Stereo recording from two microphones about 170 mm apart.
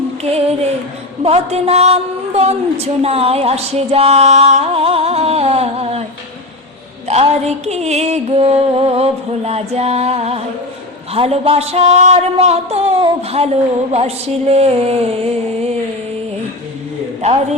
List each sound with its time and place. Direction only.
0.2 s a woman's voice: 40° right (ahead or behind)
7.1 s a woman's voice: 40° right (ahead or behind)